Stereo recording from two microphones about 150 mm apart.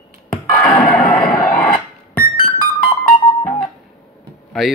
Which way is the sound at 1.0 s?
65° left (ahead or behind).